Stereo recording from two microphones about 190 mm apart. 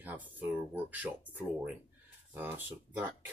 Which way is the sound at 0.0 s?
10° right (ahead or behind).